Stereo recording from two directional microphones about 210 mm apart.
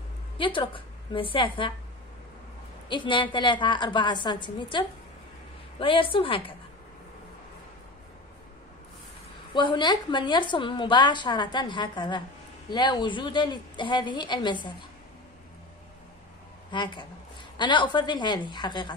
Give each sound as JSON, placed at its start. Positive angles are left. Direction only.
{"t": 0.4, "sound": "a woman's voice", "side_deg": 25}
{"t": 2.9, "sound": "a woman's voice", "side_deg": 20}
{"t": 9.5, "sound": "a woman's voice", "side_deg": 20}
{"t": 16.7, "sound": "a woman's voice", "side_deg": 20}